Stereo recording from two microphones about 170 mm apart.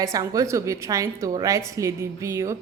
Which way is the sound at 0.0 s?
20° right (ahead or behind).